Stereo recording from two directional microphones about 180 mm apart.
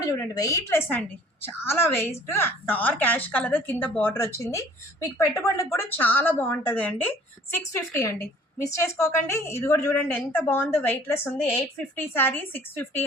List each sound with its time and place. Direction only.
0.0 s a woman's voice: 20° left (ahead or behind)